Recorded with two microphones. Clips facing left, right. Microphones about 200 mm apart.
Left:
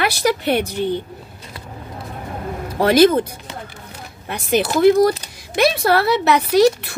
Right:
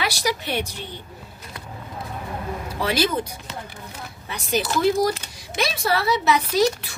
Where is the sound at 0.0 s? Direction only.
55° left (ahead or behind).